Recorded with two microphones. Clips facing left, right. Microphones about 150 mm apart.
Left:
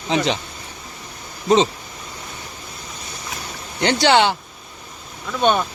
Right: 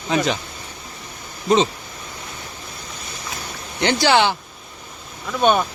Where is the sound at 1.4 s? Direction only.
30° left (ahead or behind).